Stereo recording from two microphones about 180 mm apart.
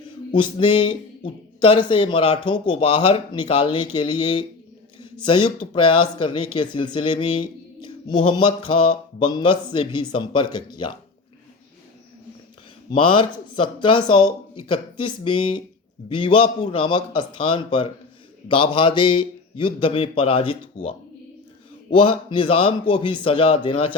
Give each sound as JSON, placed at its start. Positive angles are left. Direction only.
{"t": 0.3, "sound": "speech", "side_deg": 25}
{"t": 12.9, "sound": "speech", "side_deg": 25}